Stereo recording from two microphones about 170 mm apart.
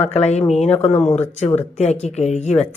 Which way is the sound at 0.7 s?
40° left (ahead or behind).